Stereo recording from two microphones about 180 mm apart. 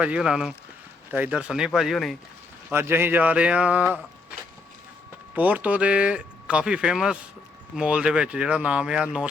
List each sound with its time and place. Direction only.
0.0 s speech: 5° right (ahead or behind)
2.6 s speech: 15° right (ahead or behind)